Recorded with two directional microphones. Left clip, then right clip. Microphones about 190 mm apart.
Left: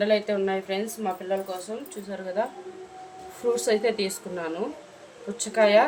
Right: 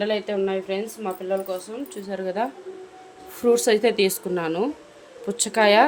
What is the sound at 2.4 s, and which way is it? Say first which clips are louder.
A woman's voice: right 2 dB; 50° right (ahead or behind).